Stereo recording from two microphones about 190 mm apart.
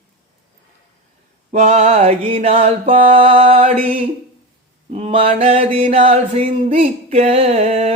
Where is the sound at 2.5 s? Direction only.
30° right (ahead or behind).